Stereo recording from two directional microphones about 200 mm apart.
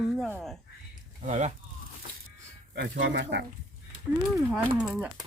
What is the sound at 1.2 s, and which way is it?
Speech, 35° right (ahead or behind).